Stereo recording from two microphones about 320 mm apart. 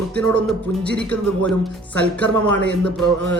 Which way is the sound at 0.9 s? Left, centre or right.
Centre.